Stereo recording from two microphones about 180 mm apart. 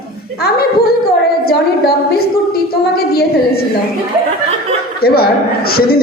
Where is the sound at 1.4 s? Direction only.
60° left (ahead or behind).